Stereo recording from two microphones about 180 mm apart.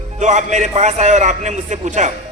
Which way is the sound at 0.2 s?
40° right (ahead or behind).